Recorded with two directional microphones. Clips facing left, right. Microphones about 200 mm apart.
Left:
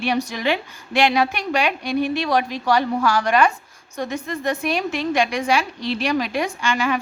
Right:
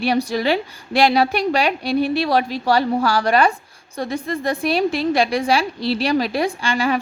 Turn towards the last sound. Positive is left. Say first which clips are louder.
# right 2 dB
turn(degrees=-35)  # may be behind; listen again after turning